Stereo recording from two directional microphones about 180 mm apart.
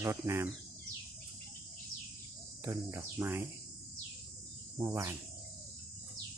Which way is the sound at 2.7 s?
10° right (ahead or behind).